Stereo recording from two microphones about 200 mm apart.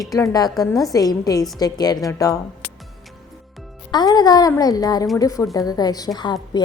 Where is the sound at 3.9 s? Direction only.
20° left (ahead or behind).